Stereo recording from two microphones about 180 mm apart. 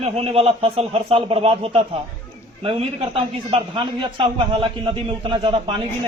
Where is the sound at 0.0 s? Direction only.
35° right (ahead or behind).